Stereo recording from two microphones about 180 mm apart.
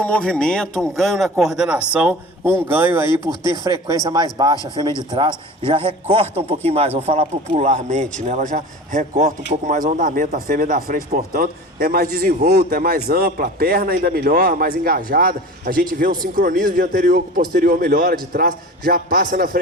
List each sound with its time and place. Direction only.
0.0 s a man's voice: 5° left (ahead or behind); by 3.1 s 10° right (ahead or behind)
3.1 s speech: 25° left (ahead or behind)
3.6 s speech: 20° right (ahead or behind)
4.5 s speech: 20° left (ahead or behind)
5.1 s speech: 30° right (ahead or behind); by 19.5 s 55° right (ahead or behind)